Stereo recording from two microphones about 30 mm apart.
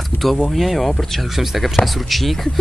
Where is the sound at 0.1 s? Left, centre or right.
Left.